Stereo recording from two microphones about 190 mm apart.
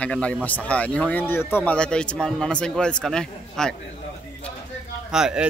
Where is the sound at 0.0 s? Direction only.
5° left (ahead or behind).